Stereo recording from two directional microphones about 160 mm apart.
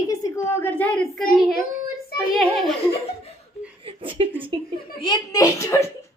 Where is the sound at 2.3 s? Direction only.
Centre (ahead or behind).